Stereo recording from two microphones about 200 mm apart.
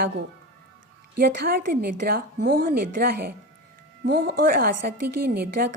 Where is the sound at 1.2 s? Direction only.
50° right (ahead or behind).